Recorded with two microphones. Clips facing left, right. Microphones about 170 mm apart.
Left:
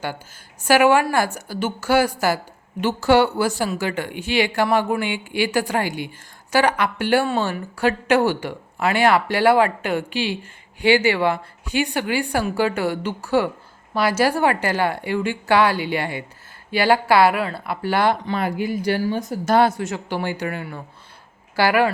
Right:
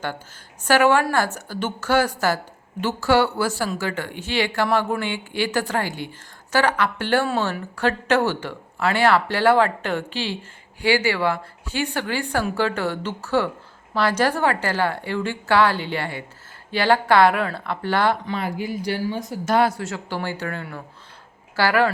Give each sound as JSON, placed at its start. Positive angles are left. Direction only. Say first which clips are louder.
{"t": 0.6, "sound": "speech", "louder": "left 2 dB", "side_deg": 10}
{"t": 18.3, "sound": "speech", "louder": "left 3 dB", "side_deg": 65}
{"t": 19.5, "sound": "speech", "louder": "left 2 dB", "side_deg": 25}